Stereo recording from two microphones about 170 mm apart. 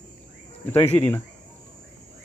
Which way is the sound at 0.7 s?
15° left (ahead or behind).